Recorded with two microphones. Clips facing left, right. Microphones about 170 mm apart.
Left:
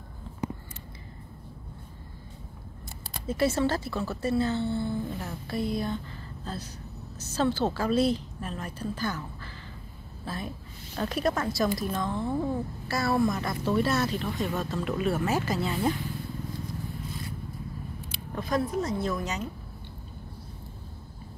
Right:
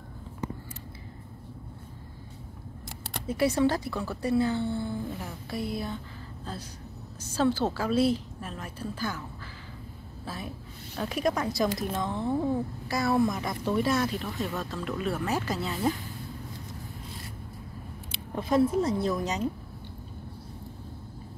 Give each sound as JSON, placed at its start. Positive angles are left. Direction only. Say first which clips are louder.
{"t": 3.3, "sound": "speech", "louder": "right 1 dB", "side_deg": -15}
{"t": 10.2, "sound": "a woman's voice", "louder": "left 2 dB", "side_deg": -5}
{"t": 18.1, "sound": "speech", "louder": "right 4 dB", "side_deg": -25}